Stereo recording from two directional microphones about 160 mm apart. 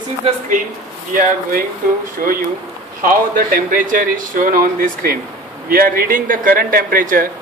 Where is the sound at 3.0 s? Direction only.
60° right (ahead or behind).